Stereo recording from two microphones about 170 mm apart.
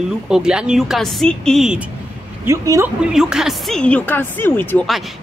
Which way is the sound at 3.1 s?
5° right (ahead or behind).